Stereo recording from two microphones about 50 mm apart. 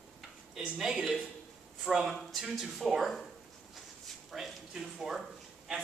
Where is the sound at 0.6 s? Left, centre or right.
Centre.